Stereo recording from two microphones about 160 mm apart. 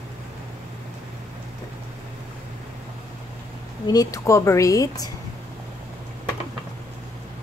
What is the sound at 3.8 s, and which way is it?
A woman's voice, 20° left (ahead or behind).